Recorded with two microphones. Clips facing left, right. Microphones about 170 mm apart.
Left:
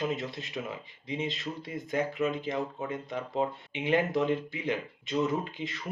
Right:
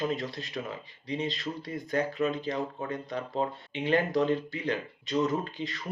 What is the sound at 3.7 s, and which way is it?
Speech, 15° left (ahead or behind).